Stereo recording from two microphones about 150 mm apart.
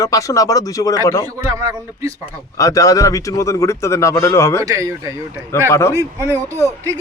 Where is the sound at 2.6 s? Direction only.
20° left (ahead or behind).